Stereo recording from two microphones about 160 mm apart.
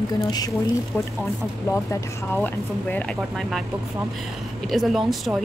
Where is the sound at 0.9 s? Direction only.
10° left (ahead or behind).